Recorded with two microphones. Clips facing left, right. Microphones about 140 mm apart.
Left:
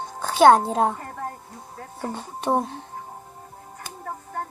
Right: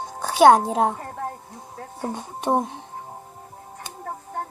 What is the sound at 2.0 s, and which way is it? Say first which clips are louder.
Speech: right 1 dB; 15° right (ahead or behind).